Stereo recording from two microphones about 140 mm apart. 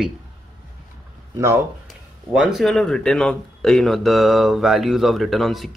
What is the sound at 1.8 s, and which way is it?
A man's voice, centre (ahead or behind).